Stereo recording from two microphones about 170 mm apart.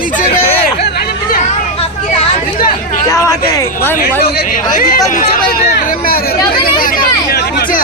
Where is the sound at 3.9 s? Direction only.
60° left (ahead or behind).